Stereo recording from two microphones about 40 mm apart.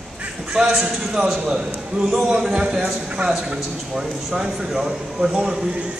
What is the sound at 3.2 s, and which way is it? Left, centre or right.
Speech, right.